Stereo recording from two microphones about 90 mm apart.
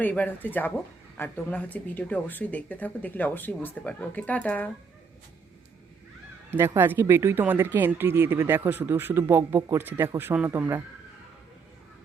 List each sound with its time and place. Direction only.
0.0 s speech: 20° left (ahead or behind)
6.5 s speech: 25° right (ahead or behind)